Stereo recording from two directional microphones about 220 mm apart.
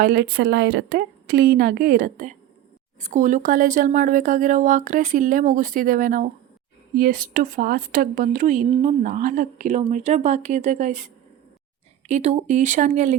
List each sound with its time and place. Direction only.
0.0 s a woman's voice: 45° right (ahead or behind)